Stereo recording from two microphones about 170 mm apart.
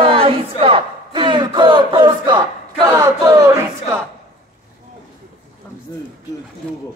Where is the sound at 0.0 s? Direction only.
35° right (ahead or behind).